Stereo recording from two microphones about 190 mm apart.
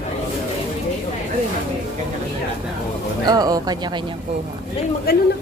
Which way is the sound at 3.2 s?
20° right (ahead or behind).